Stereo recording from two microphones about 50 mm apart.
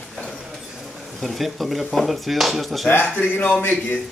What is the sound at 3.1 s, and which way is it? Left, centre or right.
Speech, left.